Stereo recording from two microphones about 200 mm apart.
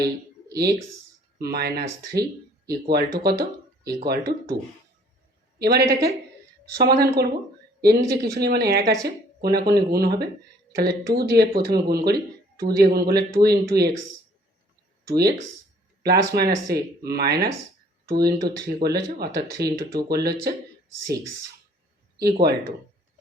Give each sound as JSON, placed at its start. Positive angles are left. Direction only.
{"t": 0.4, "sound": "a sound", "side_deg": -55}
{"t": 1.4, "sound": "speech", "side_deg": -50}
{"t": 5.5, "sound": "speech", "side_deg": -55}
{"t": 15.0, "sound": "speech", "side_deg": -50}
{"t": 22.2, "sound": "speech", "side_deg": -50}